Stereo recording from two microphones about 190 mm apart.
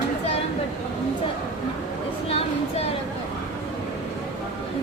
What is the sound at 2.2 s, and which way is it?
Speech, 30° left (ahead or behind).